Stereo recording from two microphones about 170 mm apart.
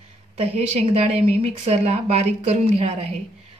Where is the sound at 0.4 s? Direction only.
40° right (ahead or behind).